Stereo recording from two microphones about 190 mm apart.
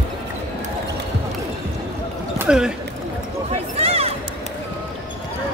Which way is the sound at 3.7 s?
30° right (ahead or behind).